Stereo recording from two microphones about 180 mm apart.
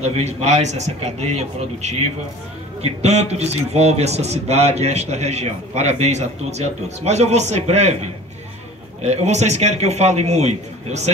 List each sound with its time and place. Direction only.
0.0 s a man's voice: 35° right (ahead or behind)
9.0 s a man's voice: 40° right (ahead or behind)